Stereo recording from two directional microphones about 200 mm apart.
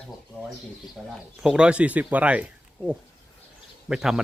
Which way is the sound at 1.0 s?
5° right (ahead or behind).